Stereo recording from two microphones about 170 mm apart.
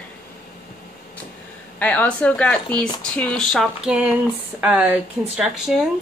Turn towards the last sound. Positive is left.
turn(degrees=0)  # may be behind; listen again after turning